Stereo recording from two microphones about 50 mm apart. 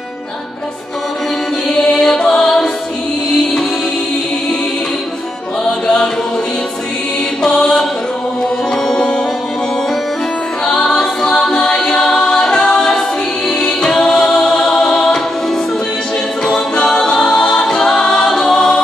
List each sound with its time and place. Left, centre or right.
1.7 s music: centre
7.4 s music: centre
8.8 s music: centre
10.6 s music: centre
16.4 s a capella: centre